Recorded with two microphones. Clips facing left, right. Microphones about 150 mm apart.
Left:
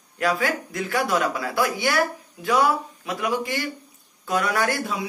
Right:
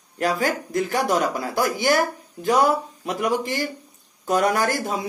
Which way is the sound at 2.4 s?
40° right (ahead or behind).